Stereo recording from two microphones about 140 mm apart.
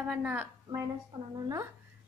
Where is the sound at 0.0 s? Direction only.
10° right (ahead or behind).